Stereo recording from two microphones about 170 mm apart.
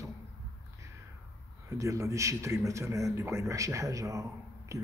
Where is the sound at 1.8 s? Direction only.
20° right (ahead or behind).